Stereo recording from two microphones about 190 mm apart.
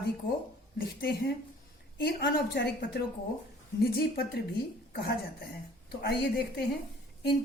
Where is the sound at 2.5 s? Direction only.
55° left (ahead or behind).